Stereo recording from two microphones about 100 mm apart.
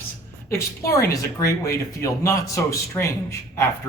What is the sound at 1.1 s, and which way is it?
A man's voice, 35° left (ahead or behind).